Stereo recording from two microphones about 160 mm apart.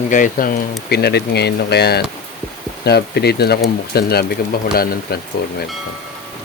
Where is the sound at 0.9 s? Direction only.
85° left.